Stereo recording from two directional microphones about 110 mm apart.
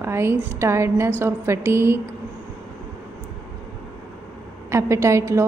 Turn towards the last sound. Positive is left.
turn(degrees=-25)  # may be behind; listen again after turning